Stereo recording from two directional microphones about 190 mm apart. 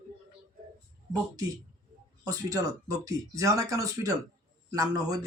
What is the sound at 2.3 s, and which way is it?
Speech, 20° right (ahead or behind).